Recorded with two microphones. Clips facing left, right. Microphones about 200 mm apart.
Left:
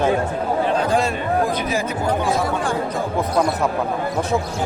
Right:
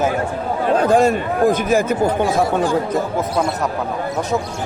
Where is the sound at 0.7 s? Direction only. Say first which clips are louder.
Right 5 dB; 45° right (ahead or behind).